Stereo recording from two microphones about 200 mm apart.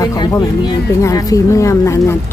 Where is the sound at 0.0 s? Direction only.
15° left (ahead or behind).